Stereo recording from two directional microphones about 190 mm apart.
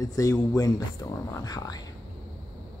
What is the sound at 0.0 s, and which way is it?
Speech, 15° left (ahead or behind).